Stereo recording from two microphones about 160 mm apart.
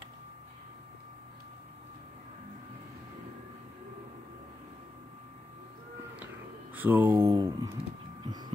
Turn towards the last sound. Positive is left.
turn(degrees=-20)  # may be behind; listen again after turning